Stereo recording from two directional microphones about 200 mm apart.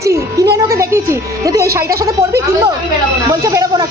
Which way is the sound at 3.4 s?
15° right (ahead or behind).